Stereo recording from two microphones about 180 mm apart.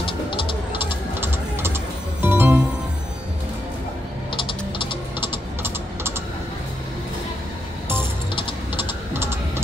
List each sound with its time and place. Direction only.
0.0 s music: 30° left (ahead or behind)
0.7 s ratchet: 10° right (ahead or behind)
2.2 s music: 10° right (ahead or behind)
4.4 s typing: 30° left (ahead or behind)
5.2 s typing: 10° right (ahead or behind)
8.7 s typing: 15° right (ahead or behind)